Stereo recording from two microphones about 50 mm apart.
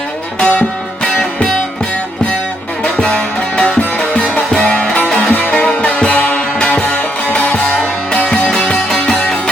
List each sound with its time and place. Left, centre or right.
0.3 s music: left
2.8 s music: centre
5.0 s music: centre
5.3 s music: left
8.7 s music: centre